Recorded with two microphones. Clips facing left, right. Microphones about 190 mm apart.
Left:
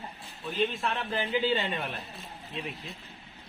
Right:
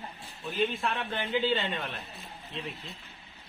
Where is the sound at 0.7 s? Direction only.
Centre (ahead or behind).